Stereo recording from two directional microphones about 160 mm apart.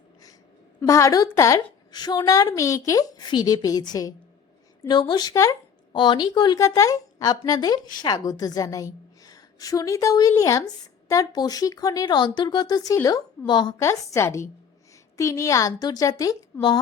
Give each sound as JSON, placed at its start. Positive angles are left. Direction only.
{"t": 0.8, "sound": "a woman's voice", "side_deg": 20}